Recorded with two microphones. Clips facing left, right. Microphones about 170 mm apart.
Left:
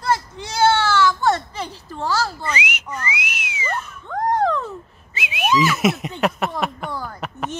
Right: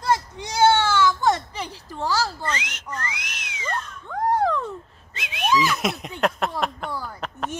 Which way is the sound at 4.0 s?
10° right (ahead or behind).